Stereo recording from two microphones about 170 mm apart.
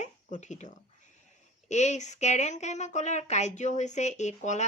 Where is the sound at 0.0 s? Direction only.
45° left (ahead or behind).